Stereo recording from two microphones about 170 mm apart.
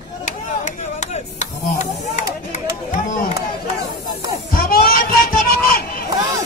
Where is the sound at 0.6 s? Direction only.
45° left (ahead or behind).